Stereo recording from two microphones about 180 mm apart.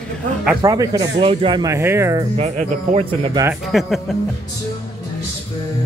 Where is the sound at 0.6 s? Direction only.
20° right (ahead or behind).